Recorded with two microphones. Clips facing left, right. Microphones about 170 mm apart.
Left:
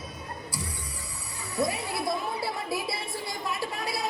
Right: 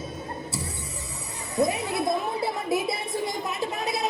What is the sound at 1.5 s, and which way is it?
Music, 20° right (ahead or behind).